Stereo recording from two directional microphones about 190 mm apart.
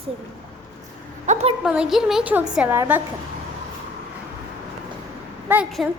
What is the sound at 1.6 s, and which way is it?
A woman's voice, 5° right (ahead or behind).